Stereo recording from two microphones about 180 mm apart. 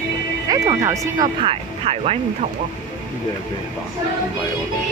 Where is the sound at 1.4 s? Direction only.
30° right (ahead or behind).